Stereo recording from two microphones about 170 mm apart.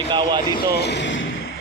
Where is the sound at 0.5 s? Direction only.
70° left (ahead or behind); by 1.2 s 90° left.